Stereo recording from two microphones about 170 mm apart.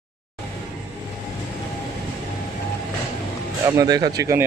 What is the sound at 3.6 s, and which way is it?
Speech, 20° right (ahead or behind).